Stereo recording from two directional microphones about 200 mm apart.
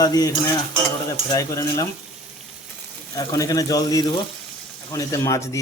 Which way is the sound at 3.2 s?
15° left (ahead or behind).